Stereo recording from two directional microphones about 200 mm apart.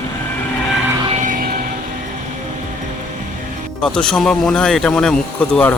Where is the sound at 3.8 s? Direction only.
5° left (ahead or behind).